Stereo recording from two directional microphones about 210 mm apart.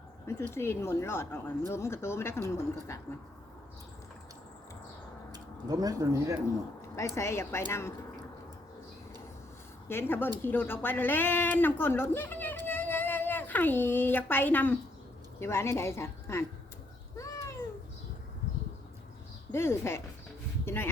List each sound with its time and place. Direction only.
0.3 s speech: 10° left (ahead or behind)
5.3 s speech: 20° right (ahead or behind)
7.2 s speech: 10° left (ahead or behind)
9.9 s speech: 10° left (ahead or behind)
12.6 s a sound: 10° left (ahead or behind)
15.4 s speech: 10° left (ahead or behind)
17.2 s cat: 15° left (ahead or behind)
19.5 s speech: 10° left (ahead or behind)